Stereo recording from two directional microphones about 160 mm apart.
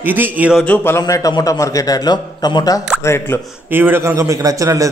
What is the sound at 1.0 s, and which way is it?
A man's voice, 20° left (ahead or behind).